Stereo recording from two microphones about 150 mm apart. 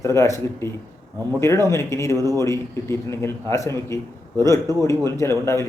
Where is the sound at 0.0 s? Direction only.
20° left (ahead or behind).